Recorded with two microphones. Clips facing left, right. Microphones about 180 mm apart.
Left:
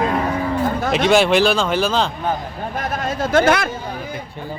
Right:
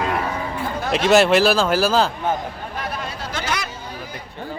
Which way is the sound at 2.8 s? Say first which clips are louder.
Left 7 dB; 45° left (ahead or behind).